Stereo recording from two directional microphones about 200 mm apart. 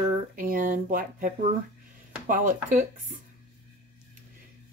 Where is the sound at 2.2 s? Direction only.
40° right (ahead or behind).